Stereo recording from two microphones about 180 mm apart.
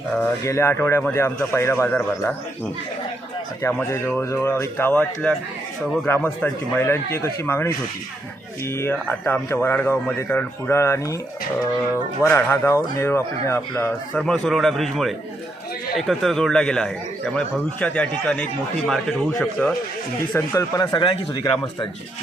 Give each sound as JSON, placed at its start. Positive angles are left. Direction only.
{"t": 0.2, "sound": "speech", "side_deg": 15}
{"t": 3.6, "sound": "speech", "side_deg": 10}
{"t": 8.8, "sound": "speech", "side_deg": 10}
{"t": 12.2, "sound": "a man's voice", "side_deg": 15}